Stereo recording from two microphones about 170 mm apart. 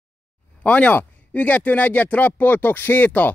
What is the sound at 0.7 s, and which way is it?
Speech, 10° left (ahead or behind).